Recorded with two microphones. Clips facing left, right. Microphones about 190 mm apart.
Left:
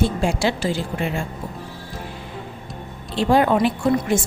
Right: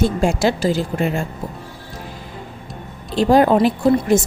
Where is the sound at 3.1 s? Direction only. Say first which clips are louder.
Right 4 dB; 40° right (ahead or behind).